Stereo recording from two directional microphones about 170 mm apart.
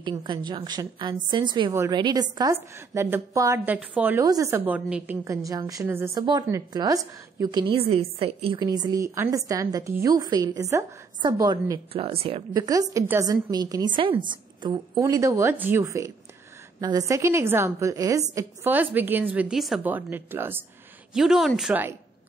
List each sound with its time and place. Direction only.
0.0 s a woman's voice: 25° right (ahead or behind)
1.7 s a woman's voice: 15° right (ahead or behind)
4.2 s a woman's voice: 20° right (ahead or behind)
8.5 s a woman's voice: 25° right (ahead or behind)
11.9 s a woman's voice: 35° right (ahead or behind)
12.5 s a woman's voice: 20° right (ahead or behind)